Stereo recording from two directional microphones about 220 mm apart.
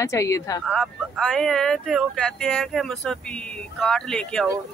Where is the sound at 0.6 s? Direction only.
5° left (ahead or behind).